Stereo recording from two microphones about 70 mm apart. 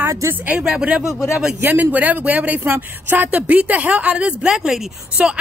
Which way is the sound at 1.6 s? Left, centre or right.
Right.